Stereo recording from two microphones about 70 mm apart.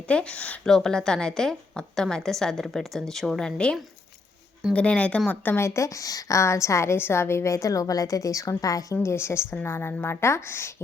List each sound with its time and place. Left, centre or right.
0.1 s a woman's voice: centre
5.5 s a woman's voice: left
9.0 s a woman's voice: left